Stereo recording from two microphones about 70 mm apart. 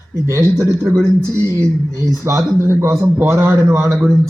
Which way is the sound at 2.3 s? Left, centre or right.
Right.